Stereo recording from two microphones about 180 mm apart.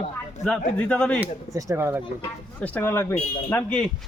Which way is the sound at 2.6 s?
10° left (ahead or behind).